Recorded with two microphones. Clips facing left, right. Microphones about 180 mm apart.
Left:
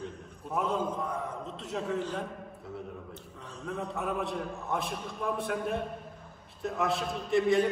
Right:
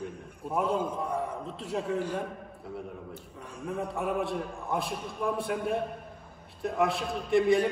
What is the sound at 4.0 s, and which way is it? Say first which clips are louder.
A man's voice: right 3 dB; centre (ahead or behind).